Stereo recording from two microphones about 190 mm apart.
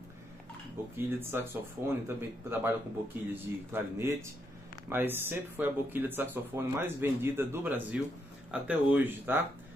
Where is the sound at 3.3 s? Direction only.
10° right (ahead or behind).